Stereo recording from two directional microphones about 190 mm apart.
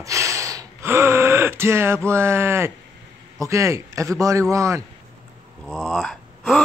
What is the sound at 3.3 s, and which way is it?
A man's voice, 15° right (ahead or behind).